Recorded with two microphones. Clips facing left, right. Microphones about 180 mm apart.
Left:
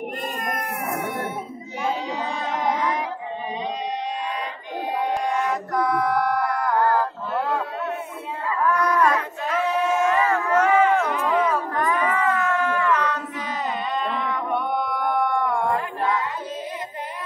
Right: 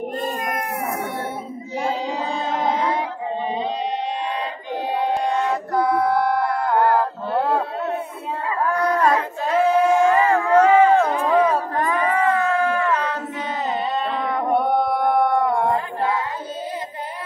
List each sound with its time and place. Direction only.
1.8 s music: 30° right (ahead or behind)
4.9 s music: 30° right (ahead or behind)
8.5 s a sound: 30° right (ahead or behind)